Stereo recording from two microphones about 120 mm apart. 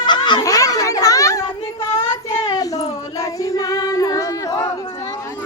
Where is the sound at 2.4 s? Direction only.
30° left (ahead or behind).